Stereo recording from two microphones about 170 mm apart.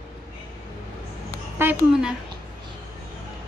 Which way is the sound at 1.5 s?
10° right (ahead or behind).